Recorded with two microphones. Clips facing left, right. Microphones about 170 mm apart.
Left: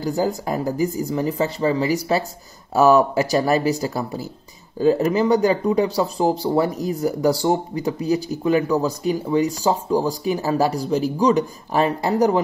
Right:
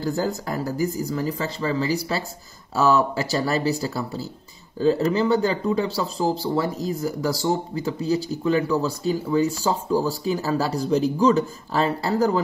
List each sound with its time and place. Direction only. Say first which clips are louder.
0.0 s speech: left 3 dB; 15° left (ahead or behind)